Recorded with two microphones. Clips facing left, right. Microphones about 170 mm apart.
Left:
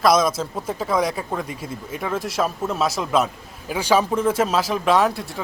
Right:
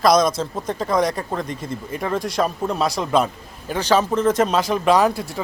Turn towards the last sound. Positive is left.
turn(degrees=0)  # may be behind; listen again after turning